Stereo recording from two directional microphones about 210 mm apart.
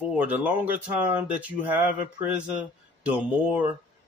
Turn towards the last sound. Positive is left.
turn(degrees=-5)  # may be behind; listen again after turning